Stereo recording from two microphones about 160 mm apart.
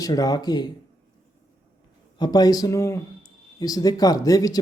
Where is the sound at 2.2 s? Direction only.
25° left (ahead or behind).